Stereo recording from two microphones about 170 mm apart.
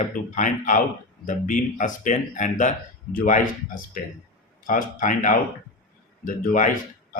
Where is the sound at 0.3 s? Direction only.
50° left (ahead or behind).